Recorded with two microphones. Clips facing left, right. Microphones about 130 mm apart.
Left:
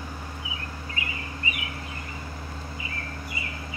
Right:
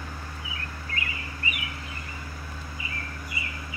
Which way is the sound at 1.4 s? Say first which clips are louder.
Left 1 dB; 25° left (ahead or behind).